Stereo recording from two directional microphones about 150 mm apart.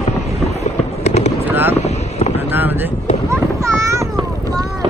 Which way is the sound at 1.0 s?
45° left (ahead or behind).